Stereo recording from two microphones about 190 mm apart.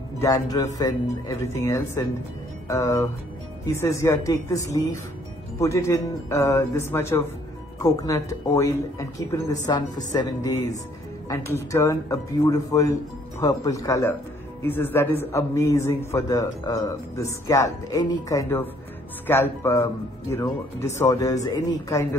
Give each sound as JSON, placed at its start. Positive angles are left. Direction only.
{"t": 0.2, "sound": "a man's voice", "side_deg": 20}